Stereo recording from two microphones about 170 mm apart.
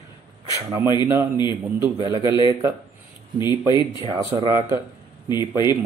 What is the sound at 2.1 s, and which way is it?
Speech, 30° left (ahead or behind).